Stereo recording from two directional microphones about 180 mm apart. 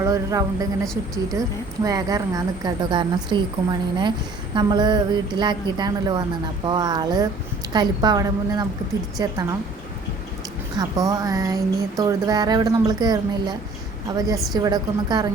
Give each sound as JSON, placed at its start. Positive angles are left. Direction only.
{"t": 0.0, "sound": "speech", "side_deg": -20}
{"t": 10.8, "sound": "speech", "side_deg": -20}